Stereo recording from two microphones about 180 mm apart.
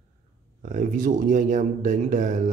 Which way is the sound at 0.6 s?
45° right (ahead or behind).